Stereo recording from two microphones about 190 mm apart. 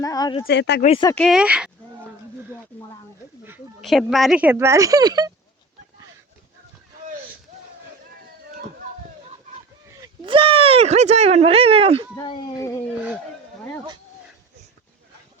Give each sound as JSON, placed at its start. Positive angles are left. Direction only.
{"t": 0.0, "sound": "speech", "side_deg": 20}
{"t": 0.4, "sound": "speech", "side_deg": 60}
{"t": 0.8, "sound": "speech", "side_deg": 35}
{"t": 1.2, "sound": "speech", "side_deg": -5}
{"t": 3.8, "sound": "speech", "side_deg": 0}
{"t": 10.0, "sound": "speech", "side_deg": -25}
{"t": 12.1, "sound": "speech", "side_deg": 25}